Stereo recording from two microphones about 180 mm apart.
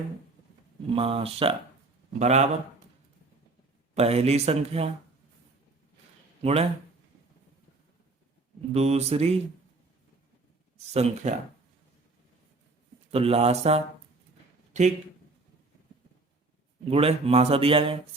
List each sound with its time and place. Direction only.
0.9 s speech: 30° right (ahead or behind)
3.9 s speech: 35° right (ahead or behind)
6.4 s speech: 35° right (ahead or behind)
8.7 s speech: 35° right (ahead or behind)
10.9 s speech: 35° right (ahead or behind)
13.1 s speech: 35° right (ahead or behind)
14.7 s a sound: 40° right (ahead or behind)
16.9 s speech: 35° right (ahead or behind)